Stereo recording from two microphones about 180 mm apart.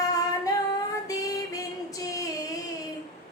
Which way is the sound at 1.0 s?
20° left (ahead or behind).